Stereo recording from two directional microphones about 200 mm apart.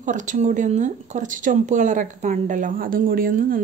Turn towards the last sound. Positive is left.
turn(degrees=-45)  # may be behind; listen again after turning